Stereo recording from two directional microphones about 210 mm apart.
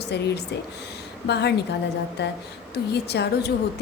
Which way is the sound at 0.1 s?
55° left (ahead or behind).